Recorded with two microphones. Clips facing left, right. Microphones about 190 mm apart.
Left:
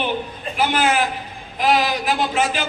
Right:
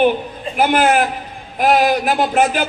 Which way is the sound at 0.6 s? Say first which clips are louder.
Right 5 dB; 55° right (ahead or behind).